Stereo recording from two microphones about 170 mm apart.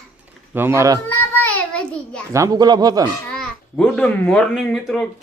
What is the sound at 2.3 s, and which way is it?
Speech, 20° right (ahead or behind).